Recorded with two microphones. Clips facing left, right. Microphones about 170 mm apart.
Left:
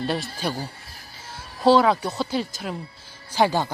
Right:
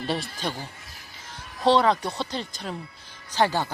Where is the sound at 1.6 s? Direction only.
5° left (ahead or behind).